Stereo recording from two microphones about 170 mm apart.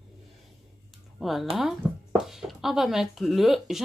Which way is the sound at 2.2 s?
Centre (ahead or behind).